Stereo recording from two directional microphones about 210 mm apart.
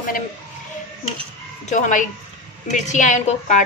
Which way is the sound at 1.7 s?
40° left (ahead or behind).